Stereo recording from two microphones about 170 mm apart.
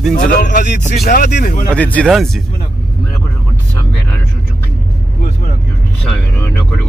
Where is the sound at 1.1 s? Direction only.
65° left (ahead or behind).